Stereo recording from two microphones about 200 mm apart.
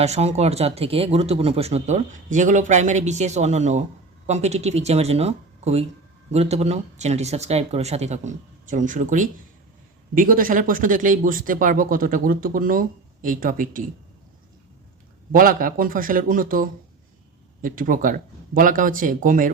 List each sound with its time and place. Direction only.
0.0 s speech: 35° right (ahead or behind)
15.3 s speech: 45° right (ahead or behind)